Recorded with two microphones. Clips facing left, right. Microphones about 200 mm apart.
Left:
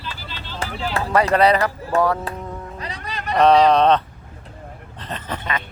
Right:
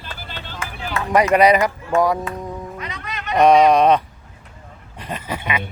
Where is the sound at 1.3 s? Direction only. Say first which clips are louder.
Right 3 dB; 15° right (ahead or behind).